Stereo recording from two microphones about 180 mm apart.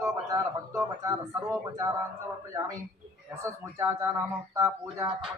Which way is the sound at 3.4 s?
15° right (ahead or behind).